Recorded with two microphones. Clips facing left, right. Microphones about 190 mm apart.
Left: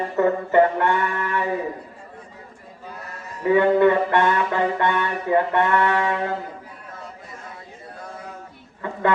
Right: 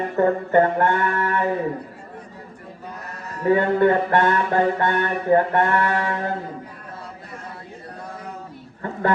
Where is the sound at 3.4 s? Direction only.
45° right (ahead or behind).